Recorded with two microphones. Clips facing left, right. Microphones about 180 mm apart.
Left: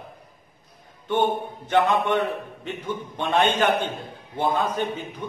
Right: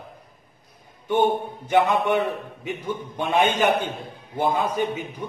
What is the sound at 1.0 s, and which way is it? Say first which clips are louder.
A man's voice: right 2 dB; 10° right (ahead or behind).